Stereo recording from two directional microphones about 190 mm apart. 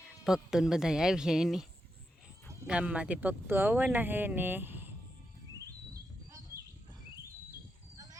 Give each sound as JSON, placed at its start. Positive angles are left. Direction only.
{"t": 0.3, "sound": "speech", "side_deg": -5}
{"t": 2.6, "sound": "speech", "side_deg": -5}
{"t": 5.9, "sound": "bird", "side_deg": -15}